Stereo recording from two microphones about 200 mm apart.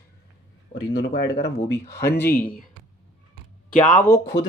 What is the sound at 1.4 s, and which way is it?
Speech, 55° left (ahead or behind).